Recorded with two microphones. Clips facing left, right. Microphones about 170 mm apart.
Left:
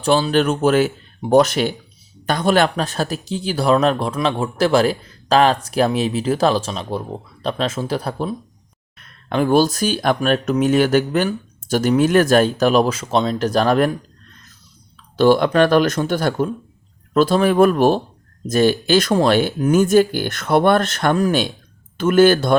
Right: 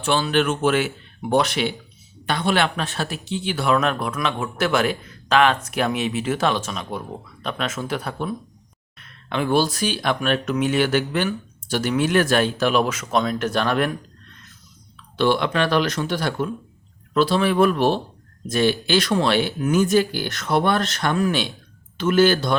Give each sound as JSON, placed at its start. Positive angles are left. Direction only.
{"t": 0.0, "sound": "speech", "side_deg": 35}